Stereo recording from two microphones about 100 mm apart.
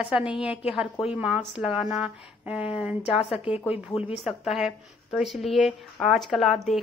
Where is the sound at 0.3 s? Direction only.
10° right (ahead or behind).